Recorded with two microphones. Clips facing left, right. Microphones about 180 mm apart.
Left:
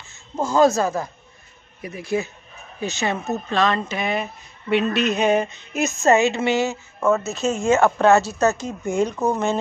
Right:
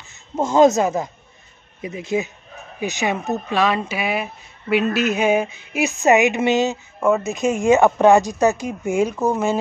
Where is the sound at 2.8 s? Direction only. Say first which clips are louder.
Right 2 dB; 15° right (ahead or behind).